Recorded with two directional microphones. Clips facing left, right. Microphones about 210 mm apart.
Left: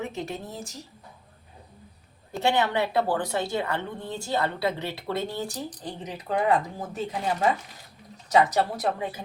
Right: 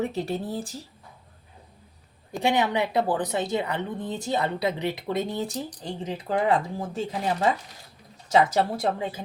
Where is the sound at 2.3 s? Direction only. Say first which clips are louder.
Right 1 dB; 15° right (ahead or behind).